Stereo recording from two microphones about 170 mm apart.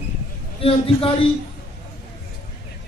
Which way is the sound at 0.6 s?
35° left (ahead or behind).